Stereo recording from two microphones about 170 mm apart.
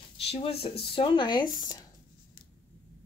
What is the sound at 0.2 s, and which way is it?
Speech, 35° left (ahead or behind).